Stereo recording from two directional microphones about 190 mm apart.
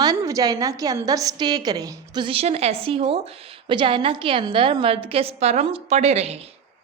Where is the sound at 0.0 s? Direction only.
20° right (ahead or behind).